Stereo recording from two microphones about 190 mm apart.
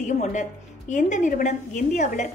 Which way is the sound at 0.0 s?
40° left (ahead or behind).